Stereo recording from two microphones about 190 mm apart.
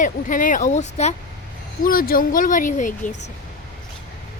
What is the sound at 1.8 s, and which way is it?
Speech, 50° left (ahead or behind).